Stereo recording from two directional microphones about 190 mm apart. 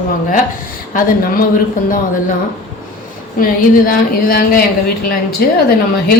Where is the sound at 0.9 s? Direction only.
50° left (ahead or behind).